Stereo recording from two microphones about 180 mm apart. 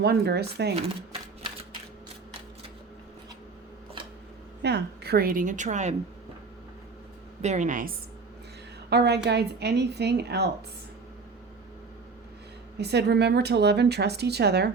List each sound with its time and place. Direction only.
0.0 s speech: 65° right (ahead or behind)
4.6 s a woman's voice: 65° right (ahead or behind); by 5.9 s 40° right (ahead or behind)
7.4 s a woman's voice: 40° right (ahead or behind)
8.9 s a woman's voice: 65° right (ahead or behind)
12.7 s a woman's voice: 70° right (ahead or behind)